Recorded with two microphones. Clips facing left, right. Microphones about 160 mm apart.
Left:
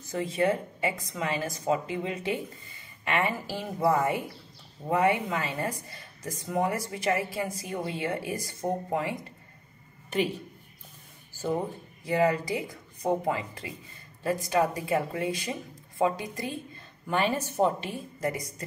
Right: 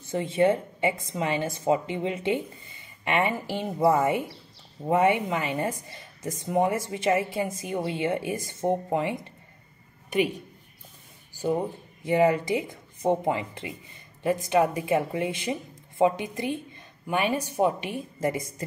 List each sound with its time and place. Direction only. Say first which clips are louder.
0.0 s a woman's voice: right 4 dB; 25° right (ahead or behind)
10.0 s a sound: right 3 dB; 15° right (ahead or behind)
11.3 s speech: right 3 dB; 15° right (ahead or behind)
12.0 s a woman's voice: right 3 dB; 25° right (ahead or behind)